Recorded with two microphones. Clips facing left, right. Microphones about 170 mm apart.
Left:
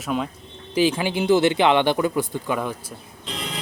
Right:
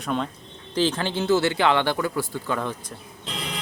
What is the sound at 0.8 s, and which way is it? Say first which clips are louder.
A man's voice: left 3 dB; 10° left (ahead or behind).